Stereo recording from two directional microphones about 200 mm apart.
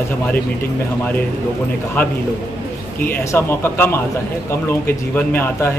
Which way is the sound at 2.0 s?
10° left (ahead or behind).